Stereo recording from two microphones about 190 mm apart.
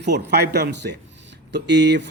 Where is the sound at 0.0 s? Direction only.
60° right (ahead or behind).